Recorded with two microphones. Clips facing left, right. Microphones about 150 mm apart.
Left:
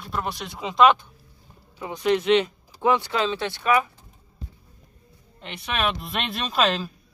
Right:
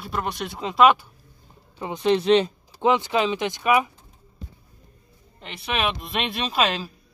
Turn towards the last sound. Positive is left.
turn(degrees=-5)  # may be behind; listen again after turning